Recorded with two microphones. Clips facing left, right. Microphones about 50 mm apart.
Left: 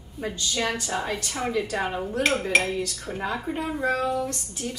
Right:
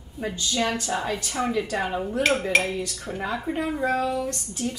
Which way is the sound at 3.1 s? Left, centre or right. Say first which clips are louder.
Right 1 dB; left.